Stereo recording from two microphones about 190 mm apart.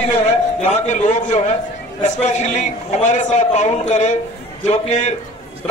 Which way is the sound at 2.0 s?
40° left (ahead or behind).